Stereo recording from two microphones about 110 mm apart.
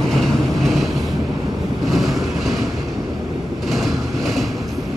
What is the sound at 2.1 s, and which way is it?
Vehicle, centre (ahead or behind).